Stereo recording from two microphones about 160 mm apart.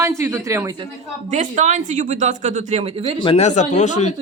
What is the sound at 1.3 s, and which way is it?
Speech, 50° right (ahead or behind).